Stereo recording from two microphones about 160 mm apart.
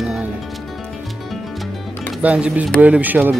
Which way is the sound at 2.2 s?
10° right (ahead or behind).